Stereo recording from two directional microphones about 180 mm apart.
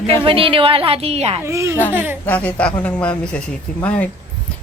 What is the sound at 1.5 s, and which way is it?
Speech, 15° right (ahead or behind).